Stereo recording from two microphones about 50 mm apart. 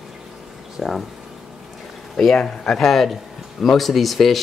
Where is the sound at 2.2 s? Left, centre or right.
Centre.